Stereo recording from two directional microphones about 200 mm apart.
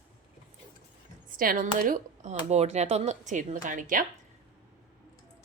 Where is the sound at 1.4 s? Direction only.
45° right (ahead or behind).